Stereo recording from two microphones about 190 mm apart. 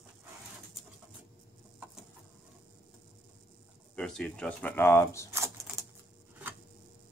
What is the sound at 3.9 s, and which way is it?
Speech, 5° left (ahead or behind).